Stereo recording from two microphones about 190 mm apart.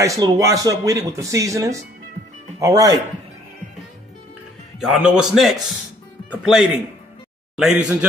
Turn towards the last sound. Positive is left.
turn(degrees=-5)  # may be behind; listen again after turning